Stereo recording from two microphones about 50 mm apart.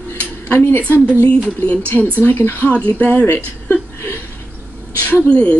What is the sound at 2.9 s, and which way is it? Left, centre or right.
Speech, left.